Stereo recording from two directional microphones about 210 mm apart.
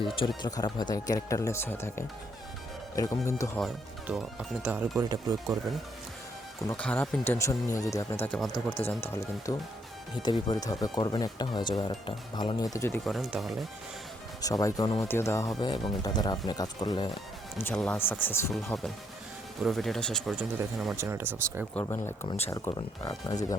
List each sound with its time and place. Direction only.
0.0 s speech: 25° left (ahead or behind)
3.6 s speech: centre (ahead or behind)
4.6 s speech: 10° right (ahead or behind)
6.7 s speech: 5° left (ahead or behind)
8.2 s speech: 5° left (ahead or behind)
13.1 s speech: centre (ahead or behind)
14.4 s speech: 15° left (ahead or behind)
17.6 s speech: 10° left (ahead or behind); by 21.7 s 10° right (ahead or behind)
21.8 s speech: 10° left (ahead or behind)